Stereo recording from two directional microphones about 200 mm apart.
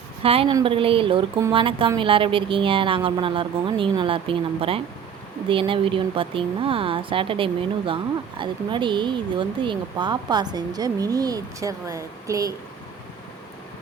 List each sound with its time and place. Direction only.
0.2 s speech: 30° right (ahead or behind)